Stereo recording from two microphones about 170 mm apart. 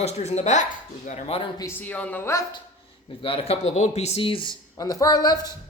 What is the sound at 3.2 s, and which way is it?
Speech, 35° left (ahead or behind).